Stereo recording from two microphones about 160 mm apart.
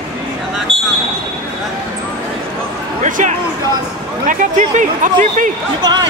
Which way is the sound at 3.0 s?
50° right (ahead or behind).